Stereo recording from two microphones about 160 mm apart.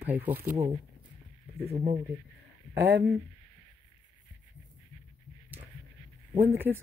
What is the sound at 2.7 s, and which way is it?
Speech, 90° right.